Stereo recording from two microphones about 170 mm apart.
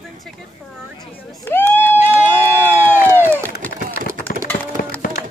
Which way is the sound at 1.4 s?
15° left (ahead or behind).